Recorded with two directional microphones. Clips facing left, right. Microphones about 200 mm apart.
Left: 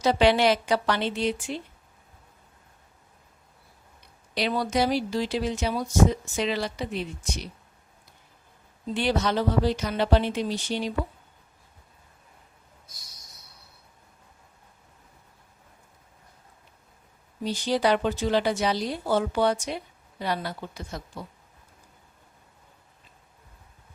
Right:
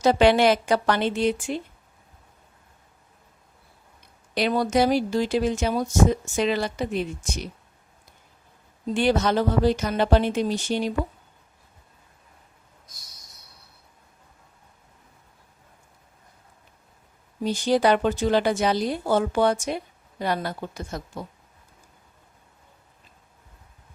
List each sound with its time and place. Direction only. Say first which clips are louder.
0.0 s a woman's voice: right 3 dB; 50° right (ahead or behind)
4.4 s a woman's voice: right 4 dB; 50° right (ahead or behind)
8.9 s a woman's voice: right 4 dB; 50° right (ahead or behind)
17.4 s a woman's voice: right 4 dB; 50° right (ahead or behind)